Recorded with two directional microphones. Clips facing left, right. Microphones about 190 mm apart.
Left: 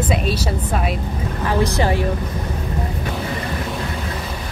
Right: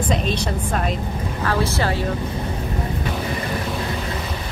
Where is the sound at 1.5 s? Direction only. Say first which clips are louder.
Left 3 dB; 15° left (ahead or behind).